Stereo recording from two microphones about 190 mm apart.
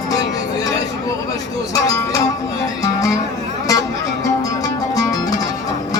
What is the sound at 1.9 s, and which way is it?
Music, 20° left (ahead or behind).